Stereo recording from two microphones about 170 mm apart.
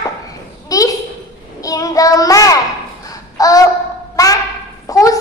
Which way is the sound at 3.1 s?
20° left (ahead or behind).